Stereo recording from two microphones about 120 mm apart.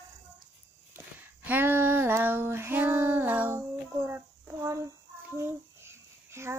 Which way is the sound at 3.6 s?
25° right (ahead or behind).